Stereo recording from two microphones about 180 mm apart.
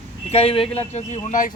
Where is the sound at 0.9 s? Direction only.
40° left (ahead or behind).